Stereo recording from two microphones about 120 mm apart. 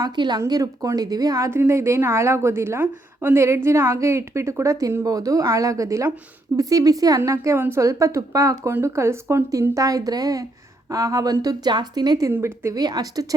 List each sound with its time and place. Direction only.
0.0 s a woman's voice: 35° right (ahead or behind)
12.3 s a woman's voice: 20° right (ahead or behind)